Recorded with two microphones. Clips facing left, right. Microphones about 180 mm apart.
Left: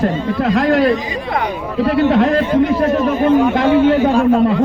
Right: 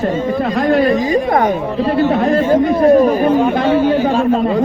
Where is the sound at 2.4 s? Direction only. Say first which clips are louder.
Right 3 dB; 45° right (ahead or behind).